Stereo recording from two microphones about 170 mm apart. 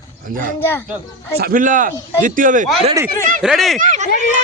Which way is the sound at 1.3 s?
60° right (ahead or behind).